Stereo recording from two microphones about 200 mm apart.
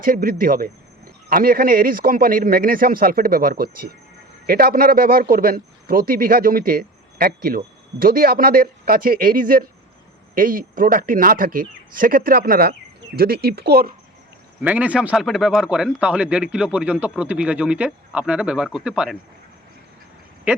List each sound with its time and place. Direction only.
0.0 s speech: 45° right (ahead or behind)
14.6 s speech: 10° right (ahead or behind)